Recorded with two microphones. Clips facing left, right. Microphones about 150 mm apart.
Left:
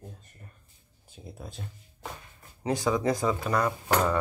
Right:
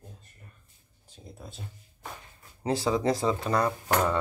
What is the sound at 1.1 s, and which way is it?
Speech, 5° left (ahead or behind).